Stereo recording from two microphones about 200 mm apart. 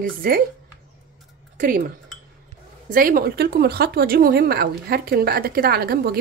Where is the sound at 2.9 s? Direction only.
45° right (ahead or behind).